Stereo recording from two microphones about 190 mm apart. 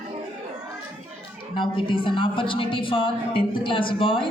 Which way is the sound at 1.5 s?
25° left (ahead or behind).